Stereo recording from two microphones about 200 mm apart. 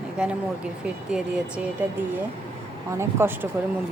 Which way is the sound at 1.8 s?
10° right (ahead or behind).